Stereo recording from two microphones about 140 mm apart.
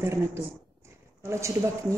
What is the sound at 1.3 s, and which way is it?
Speech, 20° right (ahead or behind).